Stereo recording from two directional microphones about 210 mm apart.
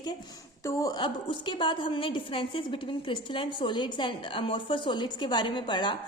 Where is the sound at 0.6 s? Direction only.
15° left (ahead or behind).